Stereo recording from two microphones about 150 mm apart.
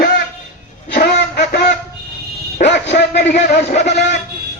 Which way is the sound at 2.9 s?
90° left.